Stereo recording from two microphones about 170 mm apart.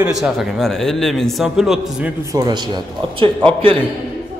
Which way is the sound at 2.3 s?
25° right (ahead or behind).